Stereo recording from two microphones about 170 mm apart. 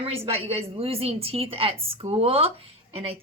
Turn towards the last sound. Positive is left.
turn(degrees=-35)  # may be behind; listen again after turning